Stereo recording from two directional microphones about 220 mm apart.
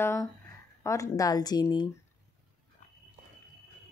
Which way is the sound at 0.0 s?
10° left (ahead or behind).